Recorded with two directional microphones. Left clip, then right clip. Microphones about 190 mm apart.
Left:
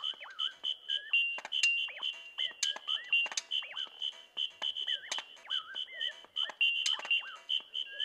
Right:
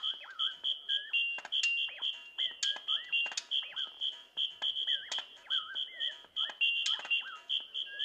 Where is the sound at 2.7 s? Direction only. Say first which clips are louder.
Left 1 dB; 40° left (ahead or behind).